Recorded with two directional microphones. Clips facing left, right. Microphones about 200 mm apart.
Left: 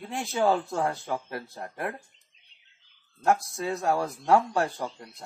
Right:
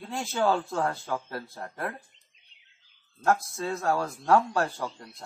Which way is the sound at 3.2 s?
15° left (ahead or behind).